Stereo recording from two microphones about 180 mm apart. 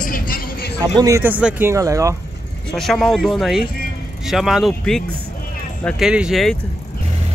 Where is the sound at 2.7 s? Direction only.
5° left (ahead or behind).